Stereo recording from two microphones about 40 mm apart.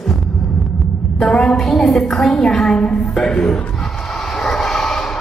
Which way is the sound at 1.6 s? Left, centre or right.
Centre.